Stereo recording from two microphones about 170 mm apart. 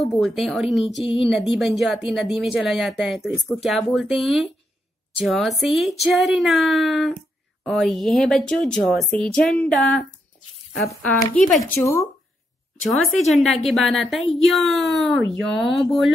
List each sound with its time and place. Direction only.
0.0 s a woman's voice: centre (ahead or behind)
11.1 s a woman's voice: centre (ahead or behind)
11.8 s speech: 15° left (ahead or behind)
13.2 s a woman's voice: centre (ahead or behind)